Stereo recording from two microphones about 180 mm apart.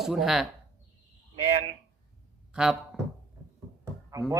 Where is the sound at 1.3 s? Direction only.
40° right (ahead or behind).